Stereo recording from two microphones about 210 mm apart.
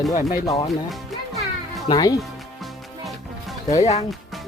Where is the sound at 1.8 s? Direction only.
20° left (ahead or behind).